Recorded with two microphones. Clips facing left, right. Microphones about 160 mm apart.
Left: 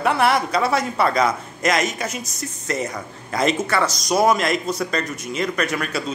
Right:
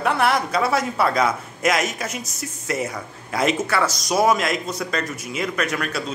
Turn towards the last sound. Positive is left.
turn(degrees=0)  # may be behind; listen again after turning